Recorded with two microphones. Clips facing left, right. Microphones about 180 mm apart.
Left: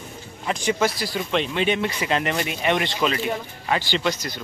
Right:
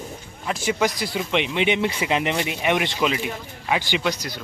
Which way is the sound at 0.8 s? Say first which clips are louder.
Even; 20° right (ahead or behind).